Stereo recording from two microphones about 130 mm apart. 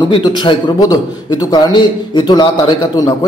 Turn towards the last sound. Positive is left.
turn(degrees=30)  # may be behind; listen again after turning